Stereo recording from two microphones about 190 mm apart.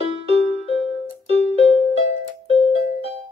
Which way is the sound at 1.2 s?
30° left (ahead or behind).